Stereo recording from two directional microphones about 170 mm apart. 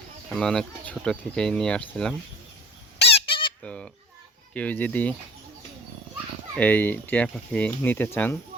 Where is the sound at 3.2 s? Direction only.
30° left (ahead or behind).